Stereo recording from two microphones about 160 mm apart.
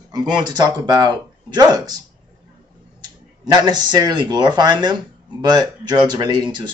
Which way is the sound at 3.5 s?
25° right (ahead or behind).